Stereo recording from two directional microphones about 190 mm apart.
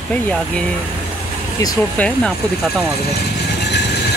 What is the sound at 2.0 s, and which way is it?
Speech, 5° left (ahead or behind).